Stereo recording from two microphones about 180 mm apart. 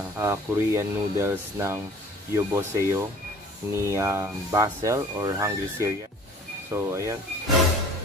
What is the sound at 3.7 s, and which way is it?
Speech, 15° right (ahead or behind).